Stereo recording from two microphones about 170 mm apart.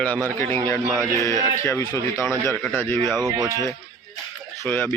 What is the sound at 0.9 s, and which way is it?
Speech, 15° right (ahead or behind).